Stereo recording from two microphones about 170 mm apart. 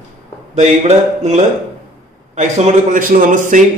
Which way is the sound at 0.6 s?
40° right (ahead or behind).